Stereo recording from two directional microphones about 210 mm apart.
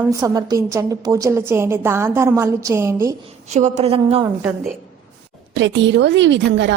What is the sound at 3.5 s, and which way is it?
Speech, 30° right (ahead or behind).